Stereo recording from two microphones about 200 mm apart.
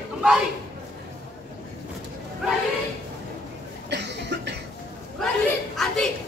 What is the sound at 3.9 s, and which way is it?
Cough, 60° right (ahead or behind).